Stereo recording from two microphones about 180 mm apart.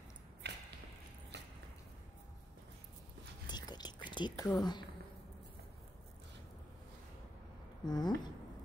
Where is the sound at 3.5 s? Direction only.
25° left (ahead or behind).